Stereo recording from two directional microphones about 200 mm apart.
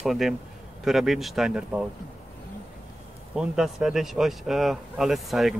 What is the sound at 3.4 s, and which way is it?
Speech, 5° right (ahead or behind).